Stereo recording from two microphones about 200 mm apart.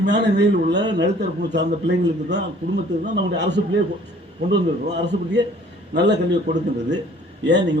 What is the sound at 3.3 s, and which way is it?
Speech, 60° right (ahead or behind).